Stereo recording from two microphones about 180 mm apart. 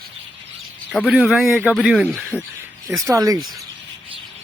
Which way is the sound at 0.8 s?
5° left (ahead or behind).